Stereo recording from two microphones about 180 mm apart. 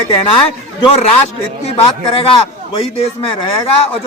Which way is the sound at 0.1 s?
30° left (ahead or behind).